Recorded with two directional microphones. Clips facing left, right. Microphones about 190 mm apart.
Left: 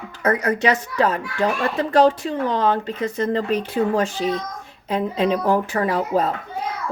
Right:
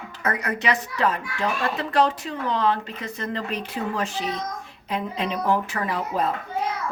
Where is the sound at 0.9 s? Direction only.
40° left (ahead or behind).